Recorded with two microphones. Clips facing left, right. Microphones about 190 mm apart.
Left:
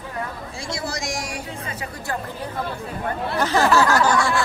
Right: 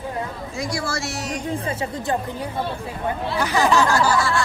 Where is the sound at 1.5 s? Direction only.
30° right (ahead or behind); by 4.4 s 5° right (ahead or behind).